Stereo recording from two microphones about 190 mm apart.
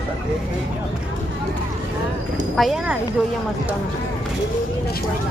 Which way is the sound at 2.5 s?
Centre (ahead or behind).